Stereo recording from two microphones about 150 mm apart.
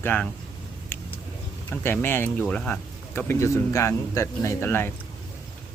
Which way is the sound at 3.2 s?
20° left (ahead or behind).